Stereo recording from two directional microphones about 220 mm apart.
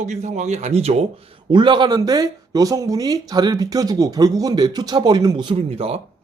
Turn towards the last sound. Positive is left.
turn(degrees=-25)  # may be behind; listen again after turning